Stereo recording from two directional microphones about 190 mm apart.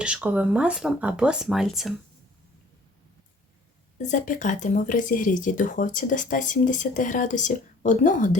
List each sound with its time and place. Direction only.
0.0 s speech: 5° right (ahead or behind)
3.9 s speech: 40° left (ahead or behind)